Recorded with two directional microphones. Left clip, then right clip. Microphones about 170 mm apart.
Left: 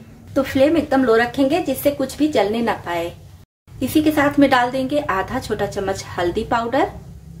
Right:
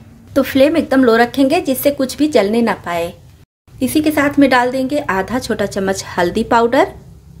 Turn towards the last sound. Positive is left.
turn(degrees=-50)  # may be behind; listen again after turning